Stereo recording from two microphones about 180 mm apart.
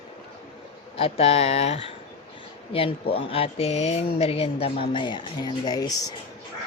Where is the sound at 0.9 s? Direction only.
35° left (ahead or behind).